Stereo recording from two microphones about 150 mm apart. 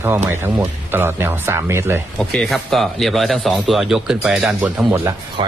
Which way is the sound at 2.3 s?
5° left (ahead or behind).